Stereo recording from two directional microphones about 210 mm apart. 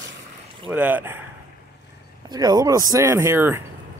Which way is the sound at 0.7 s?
10° right (ahead or behind).